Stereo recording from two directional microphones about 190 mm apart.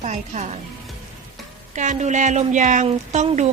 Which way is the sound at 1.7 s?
40° right (ahead or behind).